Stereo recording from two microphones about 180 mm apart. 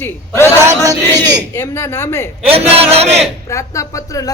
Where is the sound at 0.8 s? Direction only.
20° right (ahead or behind).